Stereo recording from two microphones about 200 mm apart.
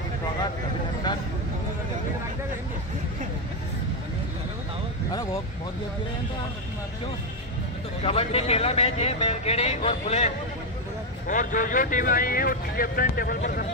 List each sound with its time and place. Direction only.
5.1 s vehicle: 15° left (ahead or behind)
8.0 s a man's voice: 30° left (ahead or behind); by 13.7 s 45° left (ahead or behind)